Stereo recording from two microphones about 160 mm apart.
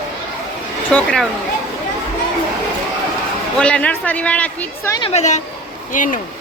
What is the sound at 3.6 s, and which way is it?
A woman's voice, 5° left (ahead or behind).